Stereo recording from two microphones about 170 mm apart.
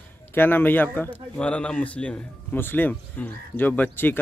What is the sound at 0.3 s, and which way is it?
A man's voice, 10° left (ahead or behind).